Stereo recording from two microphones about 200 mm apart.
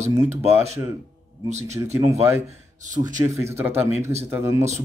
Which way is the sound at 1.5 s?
35° right (ahead or behind).